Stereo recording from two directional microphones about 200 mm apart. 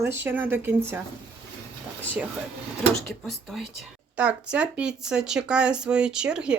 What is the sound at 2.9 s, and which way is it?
Speech, centre (ahead or behind).